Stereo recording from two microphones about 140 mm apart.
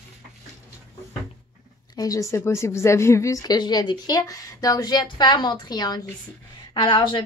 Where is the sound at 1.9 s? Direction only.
25° left (ahead or behind).